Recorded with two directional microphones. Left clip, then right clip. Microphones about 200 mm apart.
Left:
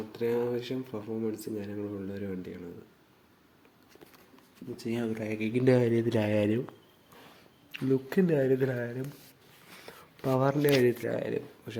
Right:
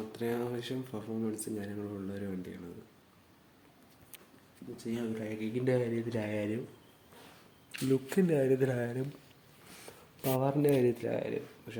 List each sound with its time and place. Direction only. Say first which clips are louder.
0.1 s speech: left 7 dB; centre (ahead or behind)
4.8 s speech: left 4 dB; 40° left (ahead or behind)
7.7 s speech: left 2 dB; 5° left (ahead or behind)
10.2 s speech: left 3 dB; 10° left (ahead or behind)
11.2 s speech: left 3 dB; 15° left (ahead or behind)